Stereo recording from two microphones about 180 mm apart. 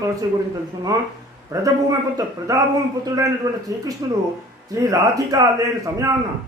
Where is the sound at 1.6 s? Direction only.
20° right (ahead or behind).